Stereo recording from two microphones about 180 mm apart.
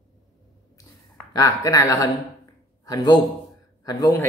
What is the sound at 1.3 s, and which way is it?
A man's voice, 20° left (ahead or behind).